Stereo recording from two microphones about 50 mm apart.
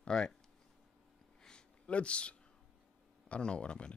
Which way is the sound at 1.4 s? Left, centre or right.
Left.